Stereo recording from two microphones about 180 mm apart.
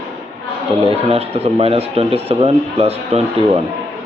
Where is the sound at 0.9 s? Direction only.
35° right (ahead or behind).